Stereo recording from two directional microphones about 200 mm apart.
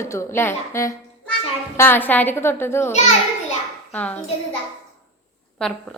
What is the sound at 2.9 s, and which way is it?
Children playing, 35° left (ahead or behind).